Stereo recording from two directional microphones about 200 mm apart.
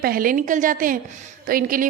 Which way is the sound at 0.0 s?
45° right (ahead or behind).